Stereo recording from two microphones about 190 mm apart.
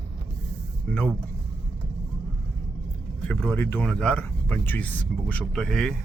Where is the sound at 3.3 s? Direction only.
10° left (ahead or behind).